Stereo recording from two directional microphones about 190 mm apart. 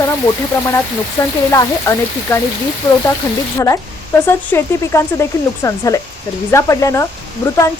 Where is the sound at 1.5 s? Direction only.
15° left (ahead or behind).